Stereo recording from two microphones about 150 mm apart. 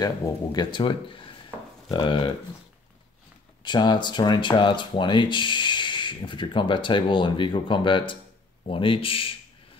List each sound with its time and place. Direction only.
0.0 s speech: 25° left (ahead or behind)
3.6 s speech: 30° left (ahead or behind)